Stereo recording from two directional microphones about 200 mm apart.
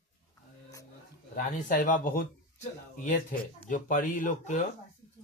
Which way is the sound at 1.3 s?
40° left (ahead or behind).